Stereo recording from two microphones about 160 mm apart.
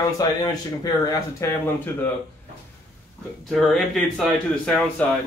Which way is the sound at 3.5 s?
Centre (ahead or behind).